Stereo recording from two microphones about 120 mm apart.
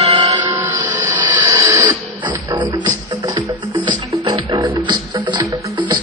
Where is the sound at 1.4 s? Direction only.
30° right (ahead or behind).